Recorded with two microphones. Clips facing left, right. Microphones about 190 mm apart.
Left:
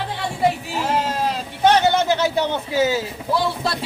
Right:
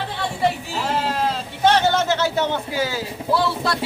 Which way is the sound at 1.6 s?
15° left (ahead or behind).